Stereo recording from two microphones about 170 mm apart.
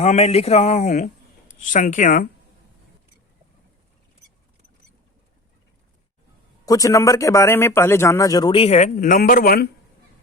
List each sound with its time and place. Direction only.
0.0 s speech: 40° left (ahead or behind)
6.7 s a man's voice: 20° left (ahead or behind); by 9.6 s 60° left (ahead or behind)